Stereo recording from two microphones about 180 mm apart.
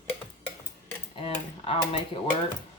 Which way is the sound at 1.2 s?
30° left (ahead or behind).